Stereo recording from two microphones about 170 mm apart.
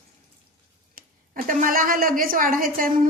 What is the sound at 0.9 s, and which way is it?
A woman's voice, 50° right (ahead or behind).